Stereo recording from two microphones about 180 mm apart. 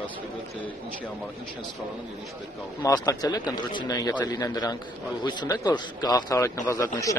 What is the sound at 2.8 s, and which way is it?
A man's voice, 20° left (ahead or behind).